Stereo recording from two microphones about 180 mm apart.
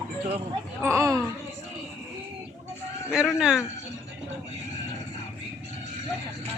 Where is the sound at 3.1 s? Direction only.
5° right (ahead or behind).